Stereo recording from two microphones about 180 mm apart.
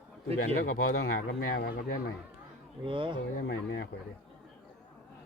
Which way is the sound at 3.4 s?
80° left.